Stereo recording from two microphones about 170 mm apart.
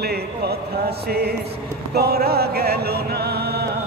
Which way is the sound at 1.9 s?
65° right (ahead or behind).